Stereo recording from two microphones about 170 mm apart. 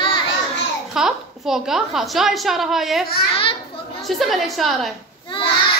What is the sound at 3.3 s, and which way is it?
Speech, 35° left (ahead or behind).